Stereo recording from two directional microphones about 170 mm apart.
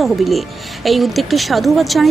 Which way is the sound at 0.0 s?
Centre (ahead or behind).